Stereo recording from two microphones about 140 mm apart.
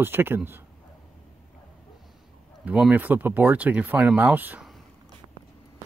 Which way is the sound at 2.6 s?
10° right (ahead or behind).